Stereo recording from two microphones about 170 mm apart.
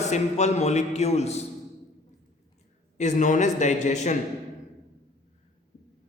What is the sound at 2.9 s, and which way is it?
A man's voice, 45° left (ahead or behind).